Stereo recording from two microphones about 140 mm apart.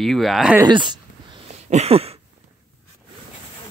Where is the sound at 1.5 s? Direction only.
50° right (ahead or behind).